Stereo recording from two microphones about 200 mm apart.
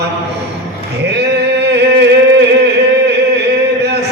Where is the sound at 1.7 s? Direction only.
60° right (ahead or behind).